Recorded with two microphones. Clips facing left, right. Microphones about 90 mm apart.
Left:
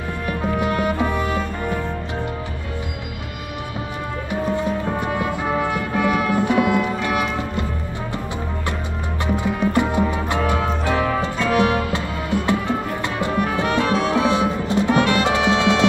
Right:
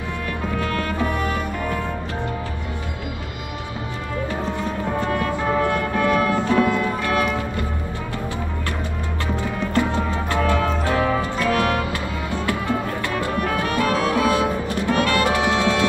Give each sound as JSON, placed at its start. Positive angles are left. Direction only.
{"t": 0.6, "sound": "music", "side_deg": 20}
{"t": 5.0, "sound": "music", "side_deg": 15}
{"t": 9.4, "sound": "music", "side_deg": 15}
{"t": 13.2, "sound": "music", "side_deg": 20}